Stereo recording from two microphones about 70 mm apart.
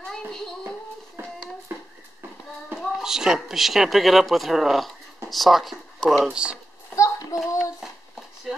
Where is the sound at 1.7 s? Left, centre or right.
Right.